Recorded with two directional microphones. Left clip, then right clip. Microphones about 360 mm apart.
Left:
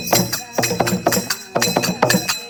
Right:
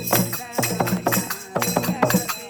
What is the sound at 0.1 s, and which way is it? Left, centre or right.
Music, left.